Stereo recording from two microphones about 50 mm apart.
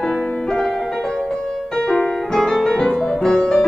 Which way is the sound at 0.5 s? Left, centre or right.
Centre.